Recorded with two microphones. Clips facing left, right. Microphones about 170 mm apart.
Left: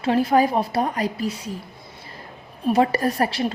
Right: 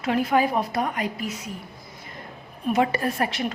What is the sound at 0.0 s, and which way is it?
A woman's voice, 35° left (ahead or behind).